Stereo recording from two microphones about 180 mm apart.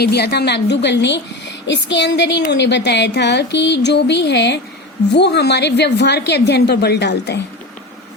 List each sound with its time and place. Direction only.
0.0 s a woman's voice: 65° left (ahead or behind)